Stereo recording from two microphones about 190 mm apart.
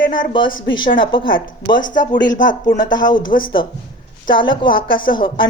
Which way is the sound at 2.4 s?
45° left (ahead or behind).